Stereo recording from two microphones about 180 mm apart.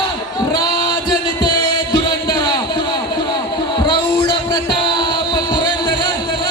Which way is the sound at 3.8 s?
25° left (ahead or behind).